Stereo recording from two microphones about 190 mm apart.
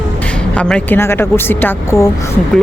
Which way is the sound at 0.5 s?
5° left (ahead or behind).